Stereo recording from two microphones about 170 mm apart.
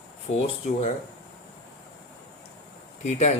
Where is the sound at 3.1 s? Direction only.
40° left (ahead or behind).